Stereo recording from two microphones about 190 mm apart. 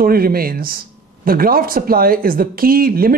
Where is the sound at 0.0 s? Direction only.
50° right (ahead or behind).